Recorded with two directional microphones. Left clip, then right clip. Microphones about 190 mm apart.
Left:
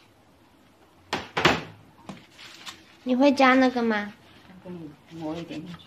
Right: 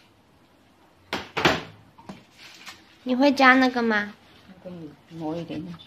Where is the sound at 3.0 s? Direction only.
Centre (ahead or behind).